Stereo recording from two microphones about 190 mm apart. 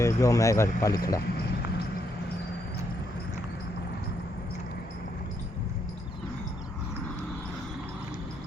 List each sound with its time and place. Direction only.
0.0 s speech: 15° left (ahead or behind)